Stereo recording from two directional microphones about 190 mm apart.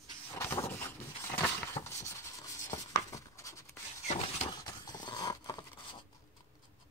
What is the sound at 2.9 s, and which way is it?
Writing, 15° left (ahead or behind).